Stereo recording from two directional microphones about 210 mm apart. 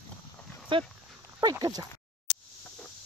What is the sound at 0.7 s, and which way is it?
Speech, 25° right (ahead or behind).